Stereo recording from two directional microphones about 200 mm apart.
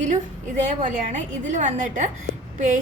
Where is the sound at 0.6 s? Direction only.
40° right (ahead or behind).